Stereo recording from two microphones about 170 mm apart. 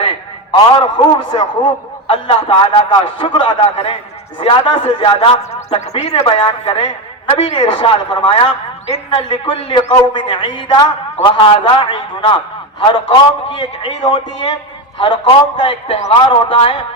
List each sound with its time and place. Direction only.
0.0 s a man's voice: 30° left (ahead or behind)